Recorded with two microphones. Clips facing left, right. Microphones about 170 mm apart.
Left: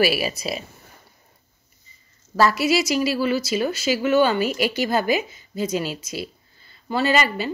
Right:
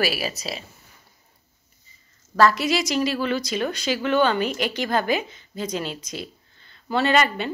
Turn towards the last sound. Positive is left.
turn(degrees=5)  # may be behind; listen again after turning